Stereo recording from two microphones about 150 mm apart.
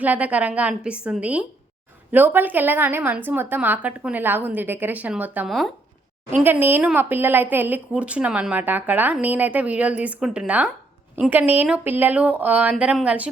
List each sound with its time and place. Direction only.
0.0 s speech: 10° right (ahead or behind)